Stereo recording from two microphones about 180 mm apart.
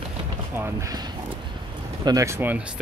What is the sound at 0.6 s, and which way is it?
Speech, 20° right (ahead or behind).